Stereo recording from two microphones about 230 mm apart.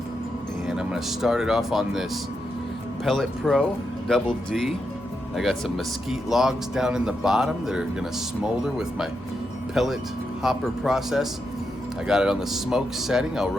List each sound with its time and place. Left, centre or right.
0.7 s speech: centre